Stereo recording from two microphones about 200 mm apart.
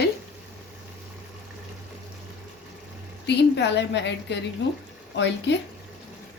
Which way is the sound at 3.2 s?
60° left (ahead or behind).